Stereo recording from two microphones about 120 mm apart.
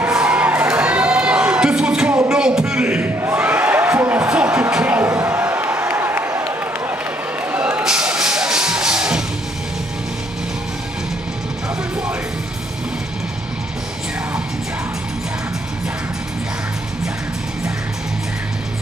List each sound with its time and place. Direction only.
0.0 s crowd: 10° right (ahead or behind)
2.2 s a sound: 5° right (ahead or behind)
7.8 s music: 5° right (ahead or behind)